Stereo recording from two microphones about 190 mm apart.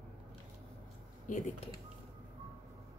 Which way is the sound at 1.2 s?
40° left (ahead or behind).